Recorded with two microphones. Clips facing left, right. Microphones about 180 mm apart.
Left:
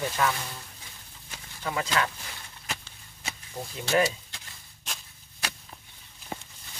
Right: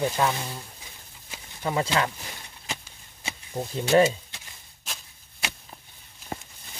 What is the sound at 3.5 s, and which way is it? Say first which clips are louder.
Speech: right 6 dB; 25° right (ahead or behind).